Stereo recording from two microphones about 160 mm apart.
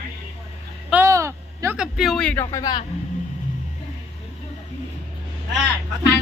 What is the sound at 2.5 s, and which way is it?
Speech, 25° left (ahead or behind).